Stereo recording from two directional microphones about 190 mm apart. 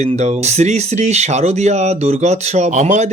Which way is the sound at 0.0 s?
35° right (ahead or behind).